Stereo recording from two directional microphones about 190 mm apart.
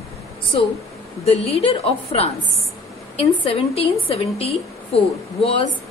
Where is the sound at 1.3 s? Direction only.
30° left (ahead or behind).